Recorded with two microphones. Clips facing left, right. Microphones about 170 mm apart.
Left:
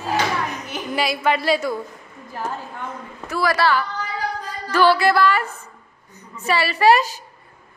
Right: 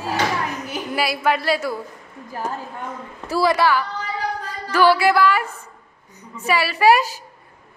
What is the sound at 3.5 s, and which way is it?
A woman's voice, 15° right (ahead or behind).